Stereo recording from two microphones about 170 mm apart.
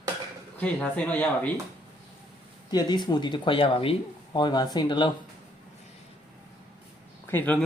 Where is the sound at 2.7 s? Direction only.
25° left (ahead or behind).